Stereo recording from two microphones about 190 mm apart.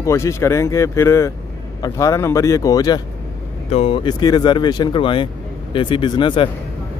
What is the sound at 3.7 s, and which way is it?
Speech, 30° left (ahead or behind).